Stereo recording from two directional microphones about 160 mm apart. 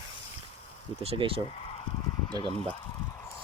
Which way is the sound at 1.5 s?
35° left (ahead or behind).